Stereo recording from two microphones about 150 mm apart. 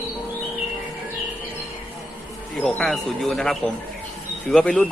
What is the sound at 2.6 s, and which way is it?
Speech, centre (ahead or behind).